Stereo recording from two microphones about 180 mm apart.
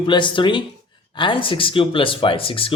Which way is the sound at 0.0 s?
25° left (ahead or behind).